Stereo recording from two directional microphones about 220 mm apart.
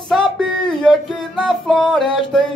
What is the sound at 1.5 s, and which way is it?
Music, centre (ahead or behind).